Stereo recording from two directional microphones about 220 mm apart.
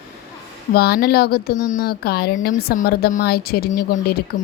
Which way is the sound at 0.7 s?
45° left (ahead or behind).